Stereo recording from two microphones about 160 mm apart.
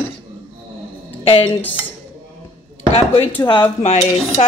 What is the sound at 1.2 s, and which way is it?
Dishes, 35° left (ahead or behind).